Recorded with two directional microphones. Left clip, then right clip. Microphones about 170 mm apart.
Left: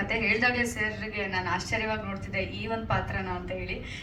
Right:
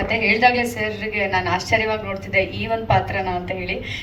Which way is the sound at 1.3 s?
25° right (ahead or behind).